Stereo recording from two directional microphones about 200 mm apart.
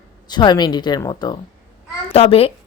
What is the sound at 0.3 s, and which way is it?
A woman's voice, 20° left (ahead or behind).